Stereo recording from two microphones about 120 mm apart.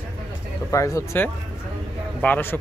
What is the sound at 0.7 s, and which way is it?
Speech, 25° left (ahead or behind).